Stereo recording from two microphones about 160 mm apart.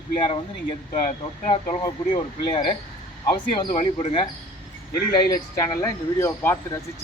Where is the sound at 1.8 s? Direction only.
25° left (ahead or behind).